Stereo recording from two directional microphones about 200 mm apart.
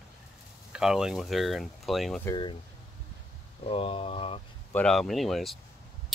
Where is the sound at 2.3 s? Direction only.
25° left (ahead or behind).